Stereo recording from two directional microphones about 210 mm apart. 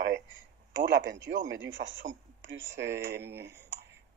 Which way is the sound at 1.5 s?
60° right (ahead or behind).